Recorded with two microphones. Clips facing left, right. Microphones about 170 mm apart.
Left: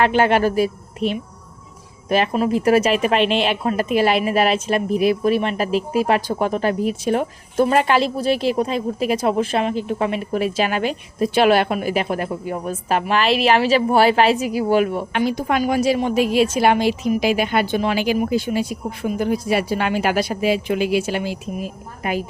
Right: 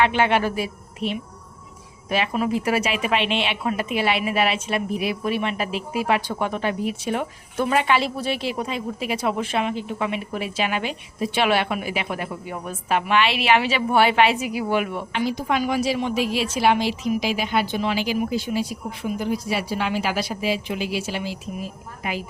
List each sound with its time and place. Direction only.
0.0 s speech: 40° left (ahead or behind)
15.1 s a woman's voice: 55° left (ahead or behind)